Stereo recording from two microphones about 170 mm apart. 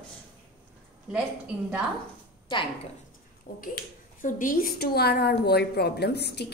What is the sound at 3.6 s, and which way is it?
A woman's voice, 55° left (ahead or behind).